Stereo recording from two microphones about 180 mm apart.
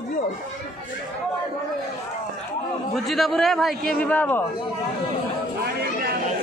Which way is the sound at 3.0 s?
Centre (ahead or behind).